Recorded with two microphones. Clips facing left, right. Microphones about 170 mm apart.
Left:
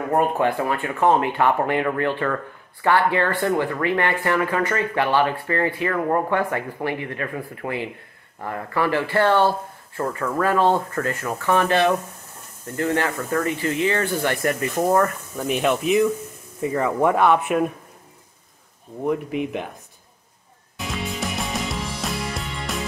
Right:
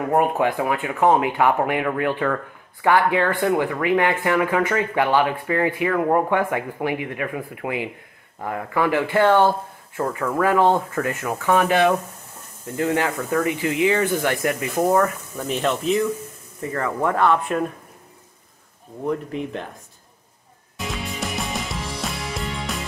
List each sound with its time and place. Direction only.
0.1 s speech: 10° right (ahead or behind)
10.0 s speech: 5° right (ahead or behind)
13.1 s speech: 5° right (ahead or behind)
13.5 s speech: 15° right (ahead or behind); by 17.7 s 15° left (ahead or behind)
19.0 s speech: 15° left (ahead or behind)
20.7 s music: centre (ahead or behind)